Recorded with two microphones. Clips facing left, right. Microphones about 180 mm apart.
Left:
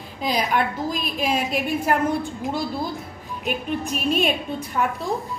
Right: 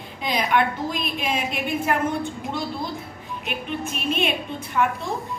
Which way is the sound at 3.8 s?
40° left (ahead or behind).